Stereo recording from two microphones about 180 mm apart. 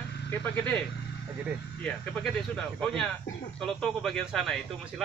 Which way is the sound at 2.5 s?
5° left (ahead or behind).